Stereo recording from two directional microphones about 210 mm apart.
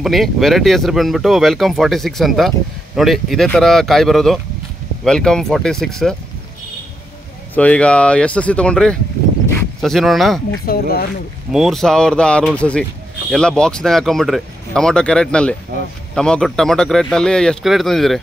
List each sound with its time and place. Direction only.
0.0 s speech: centre (ahead or behind)
7.5 s speech: 5° left (ahead or behind)
10.7 s speech: 45° left (ahead or behind)
11.5 s speech: centre (ahead or behind)